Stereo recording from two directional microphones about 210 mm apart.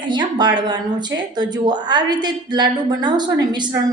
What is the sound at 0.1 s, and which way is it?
A woman's voice, 20° right (ahead or behind).